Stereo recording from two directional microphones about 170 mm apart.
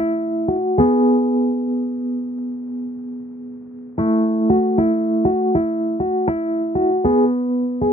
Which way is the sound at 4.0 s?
35° left (ahead or behind).